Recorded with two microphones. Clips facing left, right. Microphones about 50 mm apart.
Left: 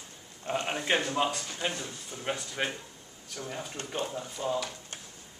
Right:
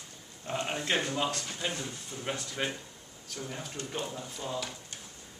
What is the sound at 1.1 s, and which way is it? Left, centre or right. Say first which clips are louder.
Speech: left 3 dB; centre.